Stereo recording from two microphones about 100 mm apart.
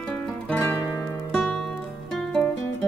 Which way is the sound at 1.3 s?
10° left (ahead or behind).